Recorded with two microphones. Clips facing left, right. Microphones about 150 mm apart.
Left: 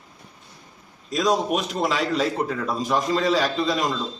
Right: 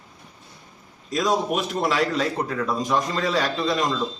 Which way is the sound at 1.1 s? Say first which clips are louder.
Left 1 dB; centre (ahead or behind).